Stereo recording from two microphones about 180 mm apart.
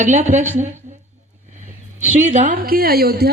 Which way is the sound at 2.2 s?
45° right (ahead or behind).